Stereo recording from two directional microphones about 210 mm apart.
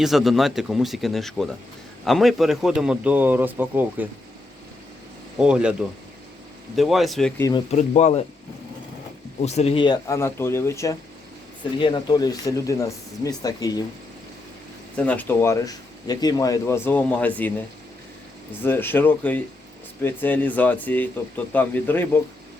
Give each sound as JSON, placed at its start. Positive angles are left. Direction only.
{"t": 0.0, "sound": "a man's voice", "side_deg": 0}
{"t": 5.4, "sound": "a man's voice", "side_deg": -5}
{"t": 6.7, "sound": "a man's voice", "side_deg": 0}
{"t": 7.7, "sound": "speech", "side_deg": 35}
{"t": 9.4, "sound": "speech", "side_deg": 30}
{"t": 14.9, "sound": "speech", "side_deg": 5}
{"t": 18.6, "sound": "speech", "side_deg": 10}